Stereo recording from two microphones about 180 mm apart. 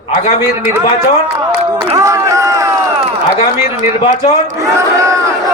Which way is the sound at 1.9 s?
15° right (ahead or behind).